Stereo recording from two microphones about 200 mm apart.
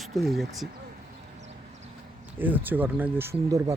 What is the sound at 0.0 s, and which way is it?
Speech, centre (ahead or behind).